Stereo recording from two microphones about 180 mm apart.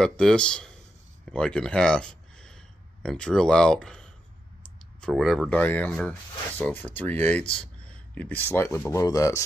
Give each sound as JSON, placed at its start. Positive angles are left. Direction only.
{"t": 0.0, "sound": "speech", "side_deg": 5}